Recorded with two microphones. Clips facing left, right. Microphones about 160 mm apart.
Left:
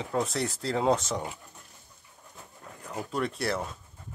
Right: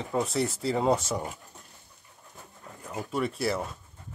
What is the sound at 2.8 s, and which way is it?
Speech, 5° right (ahead or behind).